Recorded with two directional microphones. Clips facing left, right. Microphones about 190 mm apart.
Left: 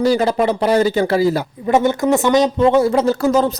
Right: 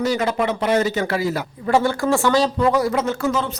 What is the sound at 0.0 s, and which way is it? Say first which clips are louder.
Speech: left 5 dB; 35° left (ahead or behind).